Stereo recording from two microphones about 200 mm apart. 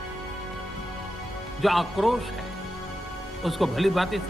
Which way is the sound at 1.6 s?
Centre (ahead or behind).